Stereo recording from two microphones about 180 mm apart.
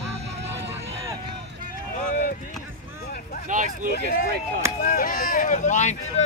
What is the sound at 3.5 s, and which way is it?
Speech, 45° right (ahead or behind).